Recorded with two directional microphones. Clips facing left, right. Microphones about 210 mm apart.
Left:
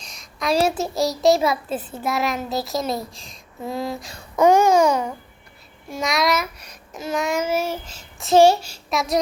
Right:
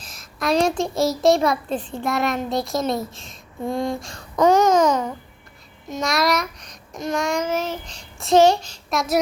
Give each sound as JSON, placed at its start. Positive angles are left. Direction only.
{"t": 0.0, "sound": "a child's voice", "side_deg": -5}